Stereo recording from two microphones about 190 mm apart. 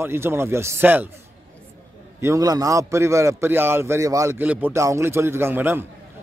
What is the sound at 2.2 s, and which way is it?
A man's voice, 15° right (ahead or behind).